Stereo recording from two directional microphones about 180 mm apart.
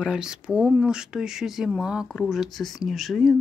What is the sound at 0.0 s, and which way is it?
Speech, 5° right (ahead or behind).